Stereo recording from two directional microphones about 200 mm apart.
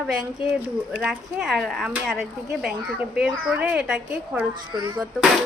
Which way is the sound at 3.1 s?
5° right (ahead or behind).